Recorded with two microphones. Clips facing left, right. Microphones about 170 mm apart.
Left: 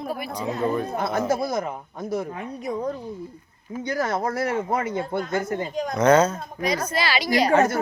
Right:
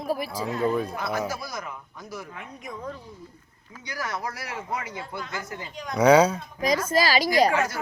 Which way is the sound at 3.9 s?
50° left (ahead or behind).